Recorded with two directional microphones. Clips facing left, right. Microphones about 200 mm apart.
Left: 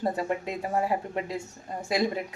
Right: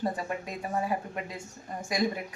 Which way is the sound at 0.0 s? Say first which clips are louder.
Left 4 dB; 30° left (ahead or behind).